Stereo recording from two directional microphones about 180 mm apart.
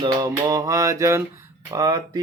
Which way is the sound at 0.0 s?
25° right (ahead or behind).